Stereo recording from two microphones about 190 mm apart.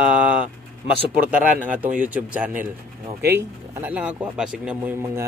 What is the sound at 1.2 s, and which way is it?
Speech, 5° right (ahead or behind).